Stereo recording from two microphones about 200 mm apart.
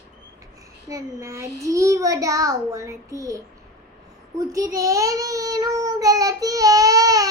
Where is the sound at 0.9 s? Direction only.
15° right (ahead or behind).